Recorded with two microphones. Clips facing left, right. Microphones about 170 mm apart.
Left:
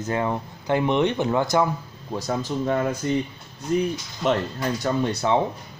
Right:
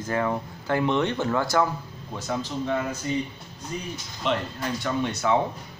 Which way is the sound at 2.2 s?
45° left (ahead or behind).